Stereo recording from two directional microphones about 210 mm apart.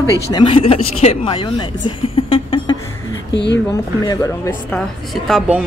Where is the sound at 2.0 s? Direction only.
25° left (ahead or behind).